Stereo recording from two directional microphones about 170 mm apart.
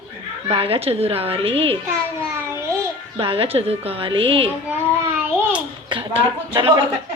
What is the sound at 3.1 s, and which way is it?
A woman's voice, 30° right (ahead or behind).